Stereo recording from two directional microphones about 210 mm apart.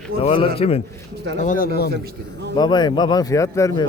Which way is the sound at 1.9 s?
50° right (ahead or behind).